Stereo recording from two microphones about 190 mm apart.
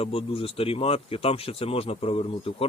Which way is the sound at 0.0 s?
30° left (ahead or behind).